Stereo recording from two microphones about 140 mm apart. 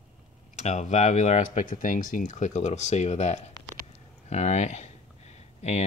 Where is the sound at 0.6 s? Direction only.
55° left (ahead or behind).